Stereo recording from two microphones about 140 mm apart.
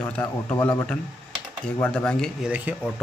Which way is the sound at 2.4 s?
10° right (ahead or behind).